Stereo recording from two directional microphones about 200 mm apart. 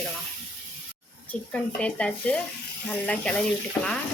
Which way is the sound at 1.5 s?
5° left (ahead or behind).